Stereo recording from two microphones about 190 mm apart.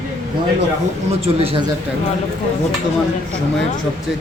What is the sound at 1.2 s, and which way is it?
Speech, 30° right (ahead or behind).